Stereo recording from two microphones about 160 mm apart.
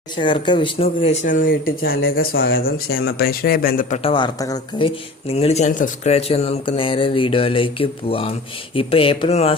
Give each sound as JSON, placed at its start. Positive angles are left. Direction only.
{"t": 0.2, "sound": "speech", "side_deg": 30}
{"t": 4.0, "sound": "speech", "side_deg": 30}
{"t": 5.3, "sound": "speech", "side_deg": 40}
{"t": 6.1, "sound": "speech", "side_deg": 40}